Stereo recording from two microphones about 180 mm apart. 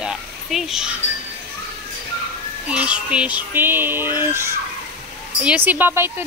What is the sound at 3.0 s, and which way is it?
A child's voice, 5° right (ahead or behind).